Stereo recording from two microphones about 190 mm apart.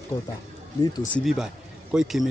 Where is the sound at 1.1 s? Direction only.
Centre (ahead or behind).